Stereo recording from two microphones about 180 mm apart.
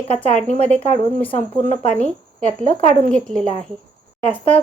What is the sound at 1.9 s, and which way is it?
Speech, 5° left (ahead or behind).